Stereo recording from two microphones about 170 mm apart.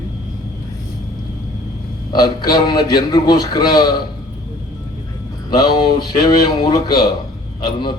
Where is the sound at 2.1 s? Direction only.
25° left (ahead or behind).